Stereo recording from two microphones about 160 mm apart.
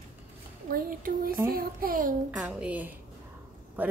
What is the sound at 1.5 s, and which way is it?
Speech, 65° right (ahead or behind).